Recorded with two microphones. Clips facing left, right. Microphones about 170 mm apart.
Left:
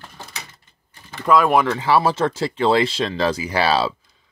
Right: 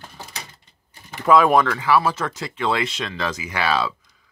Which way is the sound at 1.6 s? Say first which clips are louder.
Left 2 dB; 25° left (ahead or behind).